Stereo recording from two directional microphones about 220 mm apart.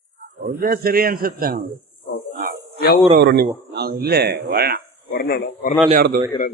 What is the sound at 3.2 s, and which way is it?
A man's voice, 50° right (ahead or behind).